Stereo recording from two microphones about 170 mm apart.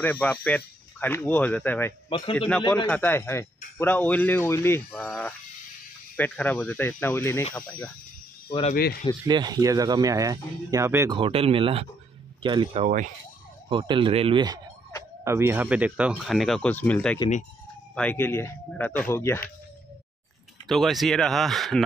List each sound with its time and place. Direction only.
0.0 s speech: 10° left (ahead or behind)
2.0 s a man's voice: 30° left (ahead or behind)
2.3 s speech: 5° left (ahead or behind)
8.5 s speech: 35° left (ahead or behind)
9.2 s speech: 25° right (ahead or behind)
11.1 s speech: 30° right (ahead or behind)
12.8 s speech: 50° right (ahead or behind)
13.7 s speech: 30° right (ahead or behind)
15.2 s speech: 15° right (ahead or behind); by 19.4 s 15° left (ahead or behind)
20.6 s speech: centre (ahead or behind)